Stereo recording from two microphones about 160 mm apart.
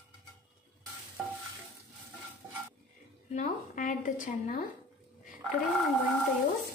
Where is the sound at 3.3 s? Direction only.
50° left (ahead or behind).